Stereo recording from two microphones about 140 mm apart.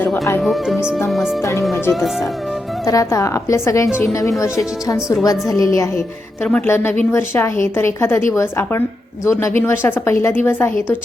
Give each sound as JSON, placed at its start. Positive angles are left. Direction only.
{"t": 0.0, "sound": "speech", "side_deg": 10}
{"t": 0.4, "sound": "speech", "side_deg": 0}
{"t": 1.4, "sound": "a woman's voice", "side_deg": 20}
{"t": 2.8, "sound": "a woman's voice", "side_deg": 25}
{"t": 4.9, "sound": "speech", "side_deg": -5}
{"t": 5.2, "sound": "a woman's voice", "side_deg": 25}